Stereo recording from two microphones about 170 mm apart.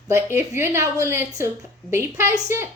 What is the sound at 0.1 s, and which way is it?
A woman's voice, 15° right (ahead or behind).